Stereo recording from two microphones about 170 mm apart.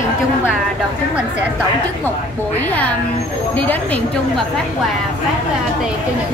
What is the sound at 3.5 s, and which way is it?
Speech, 10° left (ahead or behind).